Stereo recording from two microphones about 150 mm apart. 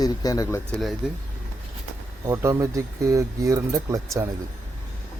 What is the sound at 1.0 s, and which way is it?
Speech, 5° right (ahead or behind).